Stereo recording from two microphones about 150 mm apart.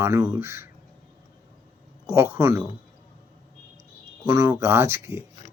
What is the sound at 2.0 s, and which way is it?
Speech, 20° right (ahead or behind).